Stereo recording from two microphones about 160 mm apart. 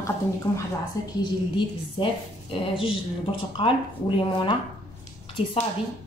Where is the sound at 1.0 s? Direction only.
20° left (ahead or behind).